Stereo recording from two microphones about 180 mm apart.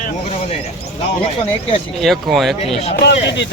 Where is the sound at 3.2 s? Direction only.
75° left (ahead or behind).